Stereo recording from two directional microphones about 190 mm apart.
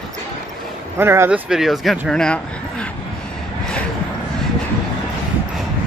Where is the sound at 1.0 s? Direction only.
10° right (ahead or behind); by 2.8 s 5° left (ahead or behind).